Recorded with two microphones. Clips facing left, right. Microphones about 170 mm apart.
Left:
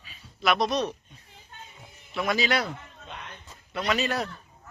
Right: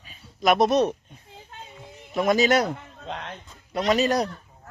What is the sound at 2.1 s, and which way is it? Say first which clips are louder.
Speech: right 7 dB; 45° right (ahead or behind).